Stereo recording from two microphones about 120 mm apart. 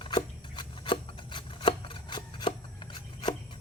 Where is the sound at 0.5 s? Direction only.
45° left (ahead or behind).